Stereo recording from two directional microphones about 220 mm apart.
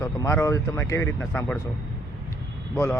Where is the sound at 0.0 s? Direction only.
10° left (ahead or behind).